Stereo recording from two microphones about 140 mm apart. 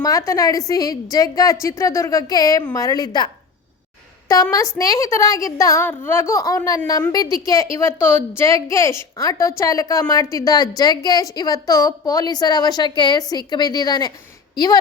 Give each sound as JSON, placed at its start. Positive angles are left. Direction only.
{"t": 0.0, "sound": "a woman's voice", "side_deg": 25}
{"t": 4.8, "sound": "a woman's voice", "side_deg": 25}